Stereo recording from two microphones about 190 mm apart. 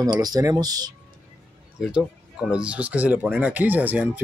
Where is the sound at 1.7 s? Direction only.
5° right (ahead or behind).